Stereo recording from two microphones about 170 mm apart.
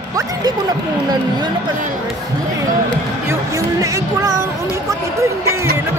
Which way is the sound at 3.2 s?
20° right (ahead or behind).